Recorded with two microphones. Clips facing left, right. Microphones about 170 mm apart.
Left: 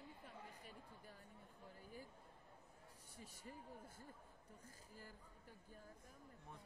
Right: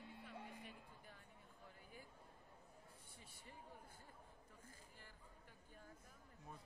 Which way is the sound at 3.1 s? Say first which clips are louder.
Left 7 dB; 40° left (ahead or behind).